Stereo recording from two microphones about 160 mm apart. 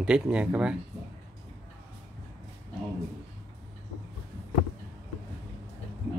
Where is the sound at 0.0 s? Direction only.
5° right (ahead or behind).